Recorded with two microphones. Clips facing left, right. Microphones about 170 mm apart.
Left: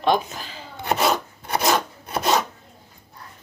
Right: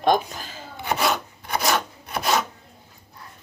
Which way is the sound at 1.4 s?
25° left (ahead or behind).